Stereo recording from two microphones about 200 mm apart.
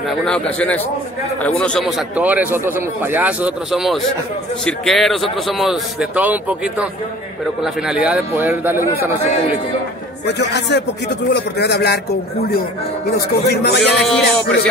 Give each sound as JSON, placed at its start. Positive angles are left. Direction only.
{"t": 0.2, "sound": "a man's voice", "side_deg": 5}
{"t": 10.2, "sound": "a man's voice", "side_deg": 60}
{"t": 14.0, "sound": "a man's voice", "side_deg": 5}